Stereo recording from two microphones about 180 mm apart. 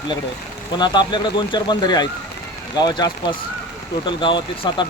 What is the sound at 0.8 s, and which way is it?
Speech, 25° left (ahead or behind).